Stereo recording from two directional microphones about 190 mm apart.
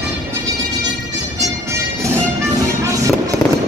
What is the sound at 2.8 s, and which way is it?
Fireworks, 15° right (ahead or behind).